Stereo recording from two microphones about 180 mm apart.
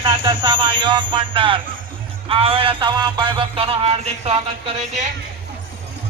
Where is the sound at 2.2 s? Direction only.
30° right (ahead or behind).